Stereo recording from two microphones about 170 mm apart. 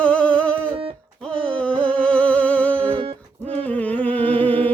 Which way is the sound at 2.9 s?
35° right (ahead or behind).